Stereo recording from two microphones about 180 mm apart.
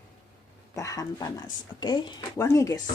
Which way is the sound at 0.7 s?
20° left (ahead or behind).